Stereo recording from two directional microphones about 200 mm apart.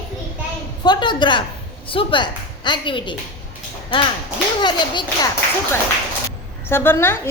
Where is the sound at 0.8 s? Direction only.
20° left (ahead or behind).